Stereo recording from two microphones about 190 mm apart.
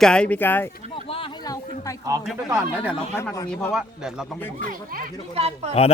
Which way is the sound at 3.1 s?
15° left (ahead or behind).